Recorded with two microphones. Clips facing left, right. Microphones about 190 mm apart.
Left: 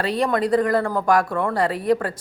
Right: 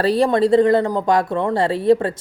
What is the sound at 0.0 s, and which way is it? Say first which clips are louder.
Speech: right 5 dB; 35° right (ahead or behind).